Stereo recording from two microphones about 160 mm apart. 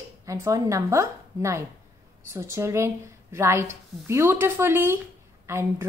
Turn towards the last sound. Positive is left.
turn(degrees=-15)  # may be behind; listen again after turning